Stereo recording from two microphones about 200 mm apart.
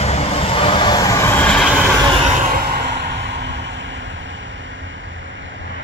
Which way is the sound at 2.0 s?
35° right (ahead or behind).